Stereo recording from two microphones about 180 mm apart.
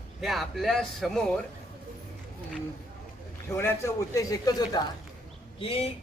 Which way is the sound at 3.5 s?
15° left (ahead or behind).